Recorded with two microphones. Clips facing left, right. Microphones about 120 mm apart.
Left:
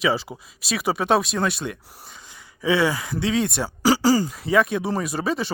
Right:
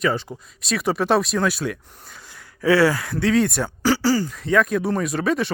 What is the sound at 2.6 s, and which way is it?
Speech, 15° left (ahead or behind).